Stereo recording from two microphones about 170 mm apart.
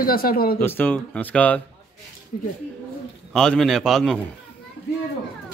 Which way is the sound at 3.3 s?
5° left (ahead or behind).